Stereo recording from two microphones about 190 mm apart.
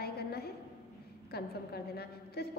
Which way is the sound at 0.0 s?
55° left (ahead or behind).